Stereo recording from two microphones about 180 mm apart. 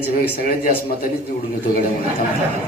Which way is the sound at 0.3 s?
55° left (ahead or behind).